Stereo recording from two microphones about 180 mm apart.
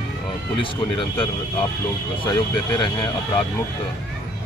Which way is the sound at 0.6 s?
30° left (ahead or behind).